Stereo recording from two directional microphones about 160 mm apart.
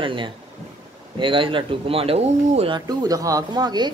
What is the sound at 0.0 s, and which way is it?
Speech, 30° right (ahead or behind).